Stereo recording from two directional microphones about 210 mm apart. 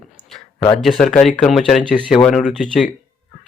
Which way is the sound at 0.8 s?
Centre (ahead or behind).